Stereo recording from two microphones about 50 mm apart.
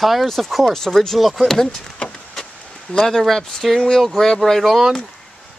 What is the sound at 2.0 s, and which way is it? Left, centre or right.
Vehicle, left.